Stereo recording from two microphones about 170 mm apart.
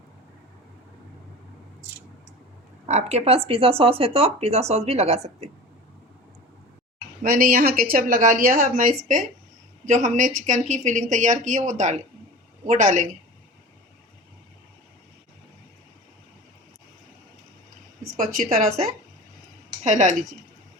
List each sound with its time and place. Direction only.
2.8 s speech: 40° right (ahead or behind)
7.2 s speech: 55° right (ahead or behind)
18.5 s speech: 50° right (ahead or behind)